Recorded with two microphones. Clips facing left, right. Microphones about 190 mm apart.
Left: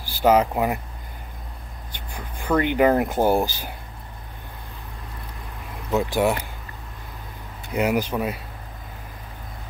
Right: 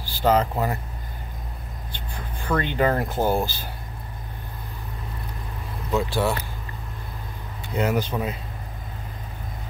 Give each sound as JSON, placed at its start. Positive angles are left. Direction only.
{"t": 0.0, "sound": "speech", "side_deg": 10}
{"t": 2.0, "sound": "speech", "side_deg": 15}
{"t": 5.9, "sound": "speech", "side_deg": 15}
{"t": 7.7, "sound": "speech", "side_deg": 10}